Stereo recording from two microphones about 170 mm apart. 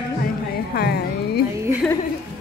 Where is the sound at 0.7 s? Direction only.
70° left (ahead or behind).